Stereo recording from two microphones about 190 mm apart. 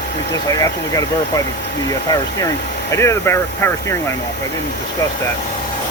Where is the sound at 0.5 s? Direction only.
20° left (ahead or behind).